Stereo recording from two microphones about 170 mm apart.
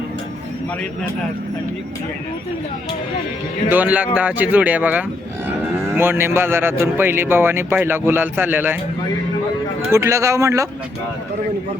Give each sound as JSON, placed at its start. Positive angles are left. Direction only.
{"t": 3.7, "sound": "speech", "side_deg": -10}
{"t": 9.9, "sound": "speech", "side_deg": -15}